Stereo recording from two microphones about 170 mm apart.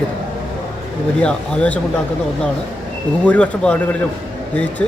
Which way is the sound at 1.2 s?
5° left (ahead or behind).